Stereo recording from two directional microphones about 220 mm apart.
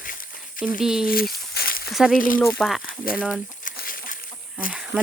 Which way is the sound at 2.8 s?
40° left (ahead or behind).